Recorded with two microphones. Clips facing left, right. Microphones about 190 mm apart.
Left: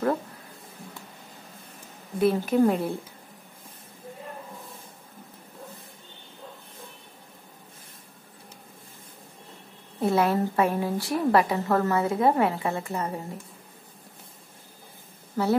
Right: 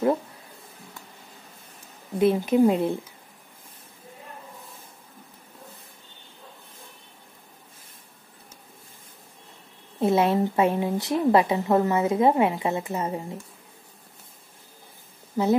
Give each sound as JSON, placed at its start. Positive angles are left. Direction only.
{"t": 2.1, "sound": "a woman's voice", "side_deg": -20}
{"t": 9.9, "sound": "a woman's voice", "side_deg": -20}
{"t": 15.4, "sound": "speech", "side_deg": -15}